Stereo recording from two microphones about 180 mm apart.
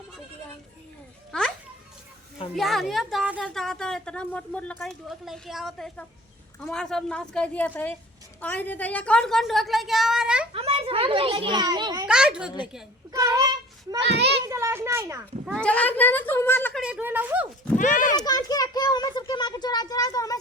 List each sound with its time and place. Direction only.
2.6 s speech: centre (ahead or behind)
10.5 s a child's voice: 30° right (ahead or behind)
12.0 s speech: 5° right (ahead or behind)
13.1 s child singing: 20° right (ahead or behind)
14.0 s a child's voice: 70° right (ahead or behind)
14.4 s a child's voice: 15° right (ahead or behind)
15.5 s speech: 5° left (ahead or behind)
16.8 s speech: 10° right (ahead or behind)
17.7 s a child's voice: 45° left (ahead or behind)
18.3 s a sound: 20° left (ahead or behind)